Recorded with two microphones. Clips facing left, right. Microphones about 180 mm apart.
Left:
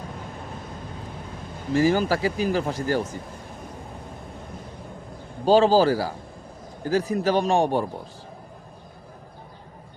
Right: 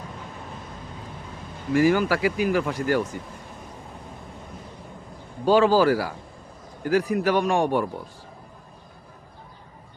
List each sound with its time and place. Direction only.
1.7 s speech: 30° left (ahead or behind)
5.5 s a man's voice: 30° left (ahead or behind)